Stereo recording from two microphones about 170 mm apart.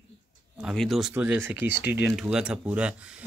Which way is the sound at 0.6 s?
Centre (ahead or behind).